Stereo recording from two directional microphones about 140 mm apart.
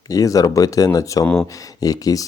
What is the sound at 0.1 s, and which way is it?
Speech, 25° left (ahead or behind).